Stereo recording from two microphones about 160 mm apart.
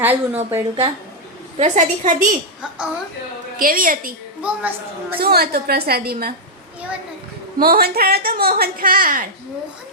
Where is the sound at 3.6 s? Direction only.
60° right (ahead or behind).